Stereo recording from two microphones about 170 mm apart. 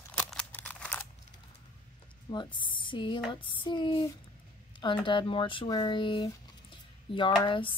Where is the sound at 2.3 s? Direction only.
30° left (ahead or behind).